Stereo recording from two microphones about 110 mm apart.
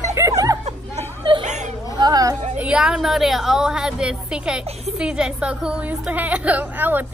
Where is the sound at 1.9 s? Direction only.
40° right (ahead or behind).